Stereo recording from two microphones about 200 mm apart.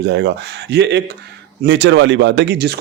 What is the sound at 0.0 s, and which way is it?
Speech, 60° right (ahead or behind).